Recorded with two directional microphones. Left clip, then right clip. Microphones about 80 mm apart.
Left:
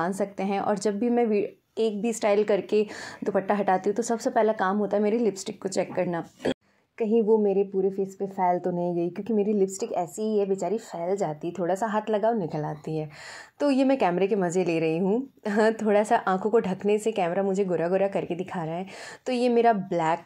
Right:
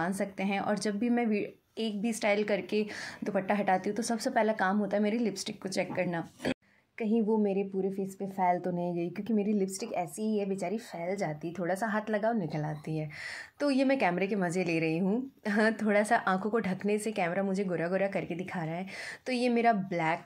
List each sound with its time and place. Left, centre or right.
0.0 s a woman's voice: left